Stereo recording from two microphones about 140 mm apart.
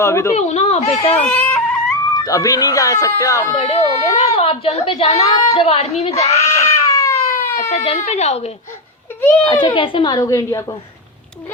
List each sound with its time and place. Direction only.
0.0 s speech: 20° left (ahead or behind)
0.3 s a woman's voice: 50° left (ahead or behind)
1.3 s a sound: 10° left (ahead or behind)
2.1 s speech: 25° left (ahead or behind)
3.6 s a woman's voice: 45° left (ahead or behind)
6.3 s cat: 20° left (ahead or behind)
7.7 s a woman's voice: 50° left (ahead or behind)
9.4 s a child's voice: 35° left (ahead or behind)